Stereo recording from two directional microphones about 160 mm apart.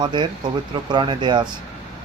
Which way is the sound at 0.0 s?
30° right (ahead or behind).